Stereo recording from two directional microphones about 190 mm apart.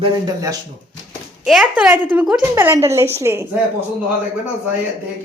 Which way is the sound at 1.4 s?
5° right (ahead or behind).